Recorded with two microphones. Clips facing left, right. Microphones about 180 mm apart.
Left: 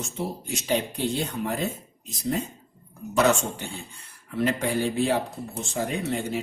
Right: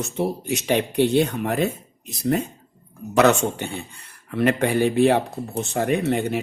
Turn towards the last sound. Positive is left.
turn(degrees=-65)  # may be behind; listen again after turning